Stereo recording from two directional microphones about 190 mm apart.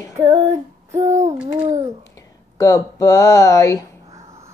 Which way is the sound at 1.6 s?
40° right (ahead or behind).